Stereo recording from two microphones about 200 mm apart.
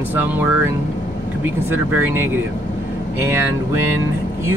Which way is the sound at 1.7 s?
10° right (ahead or behind).